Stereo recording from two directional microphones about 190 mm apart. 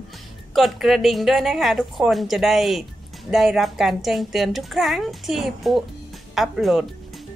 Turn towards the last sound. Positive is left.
turn(degrees=0)  # may be behind; listen again after turning